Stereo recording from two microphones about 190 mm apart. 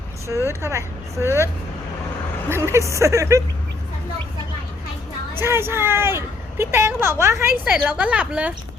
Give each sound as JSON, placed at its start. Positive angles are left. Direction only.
{"t": 0.4, "sound": "speech", "side_deg": -15}
{"t": 2.5, "sound": "speech", "side_deg": -15}
{"t": 5.4, "sound": "speech", "side_deg": -10}